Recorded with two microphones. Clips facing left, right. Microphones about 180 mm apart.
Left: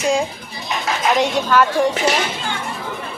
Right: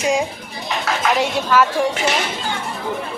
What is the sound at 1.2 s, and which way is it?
Speech, 5° right (ahead or behind).